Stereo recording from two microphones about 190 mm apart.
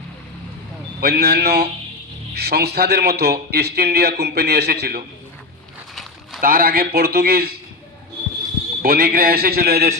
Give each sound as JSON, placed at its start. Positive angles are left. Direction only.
{"t": 1.0, "sound": "a man's voice", "side_deg": -60}
{"t": 5.9, "sound": "a sound", "side_deg": 0}
{"t": 6.4, "sound": "a man's voice", "side_deg": -50}
{"t": 8.8, "sound": "a man's voice", "side_deg": -55}